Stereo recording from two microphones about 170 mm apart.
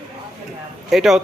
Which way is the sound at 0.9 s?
Centre (ahead or behind).